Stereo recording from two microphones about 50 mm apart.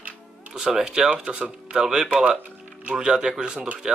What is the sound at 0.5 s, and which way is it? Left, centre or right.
Speech, centre.